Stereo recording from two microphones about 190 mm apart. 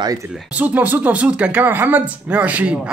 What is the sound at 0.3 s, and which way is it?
Speech, 5° right (ahead or behind).